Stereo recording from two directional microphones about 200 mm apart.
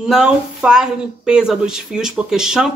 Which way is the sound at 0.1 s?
5° right (ahead or behind).